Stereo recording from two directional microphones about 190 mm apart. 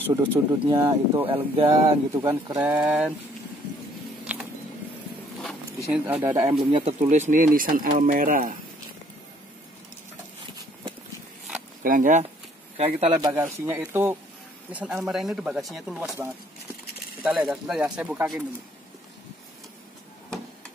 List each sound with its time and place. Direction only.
0.1 s speech: 20° right (ahead or behind)
2.7 s speech: 5° right (ahead or behind)
5.9 s speech: 10° right (ahead or behind)
6.6 s speech: 30° right (ahead or behind); by 8.5 s 45° right (ahead or behind)
11.8 s speech: 45° right (ahead or behind)
13.3 s speech: 15° right (ahead or behind)